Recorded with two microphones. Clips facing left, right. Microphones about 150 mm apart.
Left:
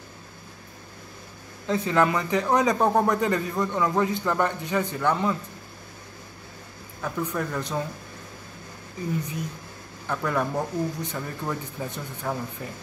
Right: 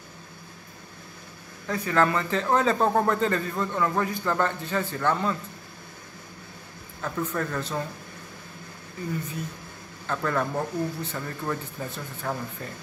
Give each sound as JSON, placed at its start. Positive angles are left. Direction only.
{"t": 1.7, "sound": "a man's voice", "side_deg": 20}
{"t": 7.0, "sound": "a man's voice", "side_deg": 10}
{"t": 10.0, "sound": "a man's voice", "side_deg": 10}